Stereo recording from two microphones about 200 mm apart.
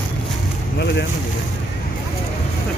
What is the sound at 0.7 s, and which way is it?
Speech, 55° left (ahead or behind).